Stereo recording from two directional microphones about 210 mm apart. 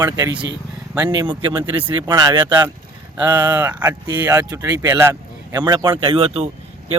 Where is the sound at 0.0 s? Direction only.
15° right (ahead or behind).